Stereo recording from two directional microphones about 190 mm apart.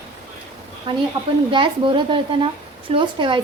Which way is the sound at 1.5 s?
25° right (ahead or behind).